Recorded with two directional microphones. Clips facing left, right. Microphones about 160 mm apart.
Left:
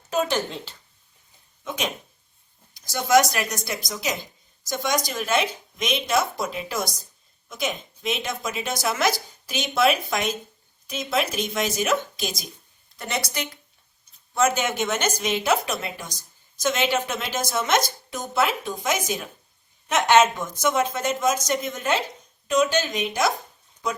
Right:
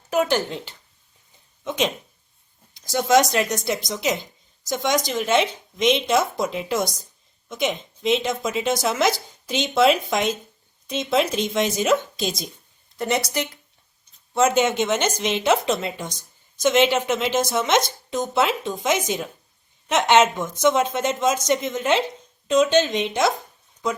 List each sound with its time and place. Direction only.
0.1 s speech: 15° right (ahead or behind)
2.7 s a woman's voice: 20° right (ahead or behind)